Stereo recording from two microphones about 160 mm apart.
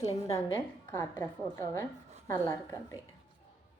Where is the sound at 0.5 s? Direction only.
20° left (ahead or behind).